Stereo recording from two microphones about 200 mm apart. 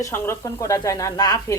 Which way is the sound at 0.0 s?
15° left (ahead or behind).